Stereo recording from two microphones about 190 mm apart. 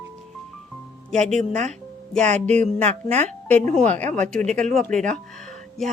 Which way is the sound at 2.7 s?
35° right (ahead or behind).